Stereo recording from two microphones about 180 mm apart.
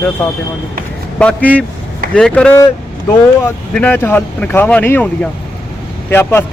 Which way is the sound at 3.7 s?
10° left (ahead or behind).